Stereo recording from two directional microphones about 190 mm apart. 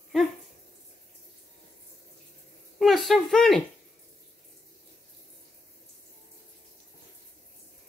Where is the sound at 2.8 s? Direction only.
Centre (ahead or behind).